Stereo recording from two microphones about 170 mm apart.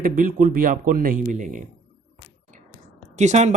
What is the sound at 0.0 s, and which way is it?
Speech, 55° right (ahead or behind).